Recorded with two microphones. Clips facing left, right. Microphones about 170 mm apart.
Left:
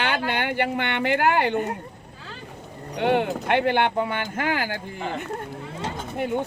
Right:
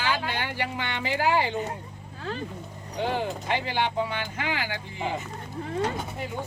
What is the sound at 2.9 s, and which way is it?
Speech, 65° left (ahead or behind).